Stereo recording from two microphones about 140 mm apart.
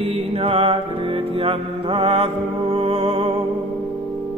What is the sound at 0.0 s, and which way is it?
Music, 40° right (ahead or behind).